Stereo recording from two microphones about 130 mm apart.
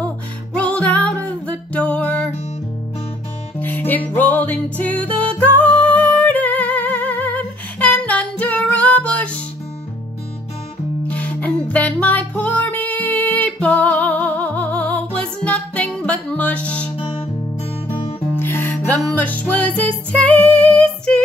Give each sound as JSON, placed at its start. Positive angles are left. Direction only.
{"t": 0.6, "sound": "music", "side_deg": 10}
{"t": 3.5, "sound": "music", "side_deg": 15}
{"t": 11.1, "sound": "music", "side_deg": 10}
{"t": 16.9, "sound": "music", "side_deg": 45}
{"t": 18.3, "sound": "music", "side_deg": 15}